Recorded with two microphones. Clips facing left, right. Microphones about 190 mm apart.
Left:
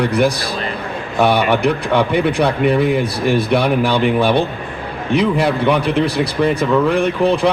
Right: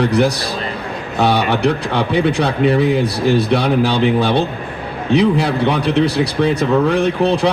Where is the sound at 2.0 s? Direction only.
60° left (ahead or behind).